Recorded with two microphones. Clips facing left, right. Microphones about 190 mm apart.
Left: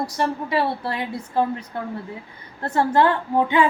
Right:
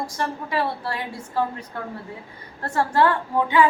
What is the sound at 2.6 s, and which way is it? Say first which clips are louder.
A woman's voice: left 2 dB; 20° left (ahead or behind).